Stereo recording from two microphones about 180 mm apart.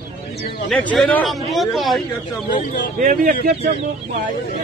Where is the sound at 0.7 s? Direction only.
5° left (ahead or behind).